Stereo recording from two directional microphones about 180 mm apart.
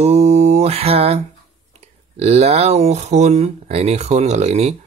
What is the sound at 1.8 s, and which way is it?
Speech, 35° right (ahead or behind).